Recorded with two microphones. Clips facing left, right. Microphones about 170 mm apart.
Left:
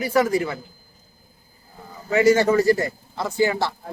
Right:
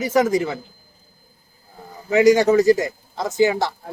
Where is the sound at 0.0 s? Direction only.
20° right (ahead or behind).